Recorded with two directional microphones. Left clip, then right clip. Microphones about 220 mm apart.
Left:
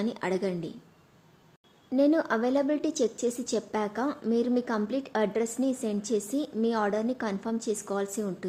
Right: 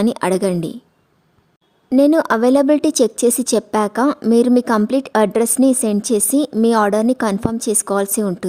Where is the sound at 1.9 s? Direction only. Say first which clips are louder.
Right 11 dB; 50° right (ahead or behind).